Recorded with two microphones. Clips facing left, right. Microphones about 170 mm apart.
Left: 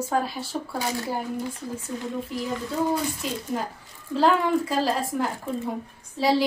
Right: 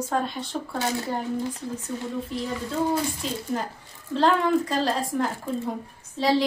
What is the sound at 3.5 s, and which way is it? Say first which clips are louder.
A woman's voice: even; centre (ahead or behind).